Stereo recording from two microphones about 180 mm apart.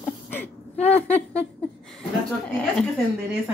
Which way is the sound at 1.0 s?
5° left (ahead or behind).